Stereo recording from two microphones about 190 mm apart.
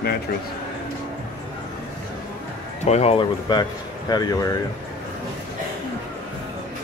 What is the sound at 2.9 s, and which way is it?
Speech, 30° left (ahead or behind).